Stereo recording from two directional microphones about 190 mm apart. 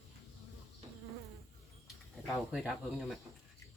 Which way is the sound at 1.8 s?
Centre (ahead or behind).